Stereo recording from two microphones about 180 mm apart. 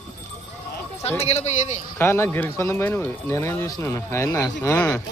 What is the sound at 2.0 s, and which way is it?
Speech, 15° left (ahead or behind).